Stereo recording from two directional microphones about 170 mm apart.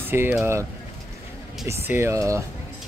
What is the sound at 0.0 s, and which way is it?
Speech, 15° right (ahead or behind).